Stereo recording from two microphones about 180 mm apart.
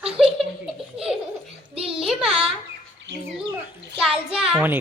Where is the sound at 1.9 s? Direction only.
5° right (ahead or behind).